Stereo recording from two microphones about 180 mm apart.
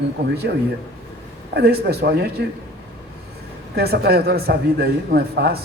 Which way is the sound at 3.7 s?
60° right (ahead or behind).